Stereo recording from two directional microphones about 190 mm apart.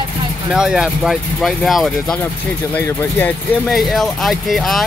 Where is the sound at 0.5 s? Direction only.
5° right (ahead or behind).